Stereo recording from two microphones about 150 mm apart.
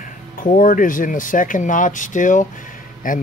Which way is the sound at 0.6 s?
65° left (ahead or behind).